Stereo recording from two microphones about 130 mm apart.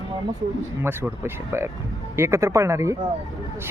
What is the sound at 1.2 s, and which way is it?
Speech, 20° right (ahead or behind).